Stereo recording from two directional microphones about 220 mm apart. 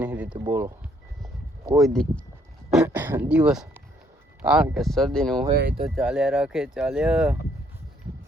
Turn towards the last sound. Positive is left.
turn(degrees=-5)  # may be behind; listen again after turning